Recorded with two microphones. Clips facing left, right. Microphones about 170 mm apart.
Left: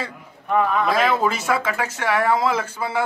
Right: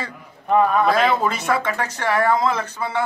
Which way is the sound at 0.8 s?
Centre (ahead or behind).